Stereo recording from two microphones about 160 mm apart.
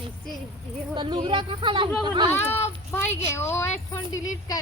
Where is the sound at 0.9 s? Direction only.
30° right (ahead or behind).